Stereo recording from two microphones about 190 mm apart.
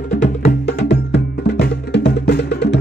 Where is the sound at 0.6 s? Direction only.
60° left (ahead or behind).